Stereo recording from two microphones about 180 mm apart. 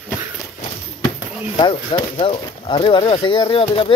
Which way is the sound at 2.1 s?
30° left (ahead or behind).